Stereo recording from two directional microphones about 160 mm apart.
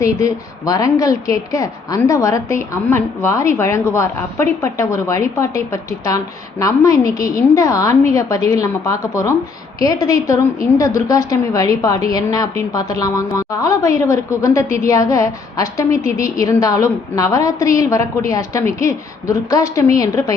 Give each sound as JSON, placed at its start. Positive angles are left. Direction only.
{"t": 0.0, "sound": "a woman's voice", "side_deg": 20}